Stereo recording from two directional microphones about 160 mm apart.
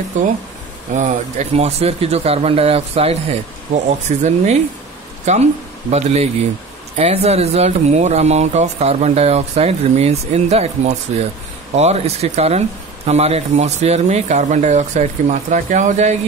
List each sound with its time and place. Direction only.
0.9 s speech: 45° right (ahead or behind)